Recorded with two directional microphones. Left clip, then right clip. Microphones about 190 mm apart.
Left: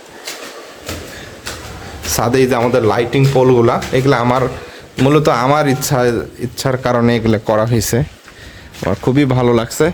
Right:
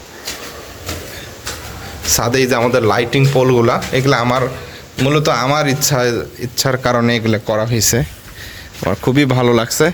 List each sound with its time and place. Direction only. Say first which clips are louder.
2.0 s speech: left 1 dB; 25° left (ahead or behind)
2.6 s speech: even; 10° left (ahead or behind)
5.0 s speech: left 3 dB; 30° left (ahead or behind)
6.7 s speech: even; 5° left (ahead or behind)
7.0 s speech: left 2 dB; 20° left (ahead or behind)
8.8 s speech: even; 5° left (ahead or behind)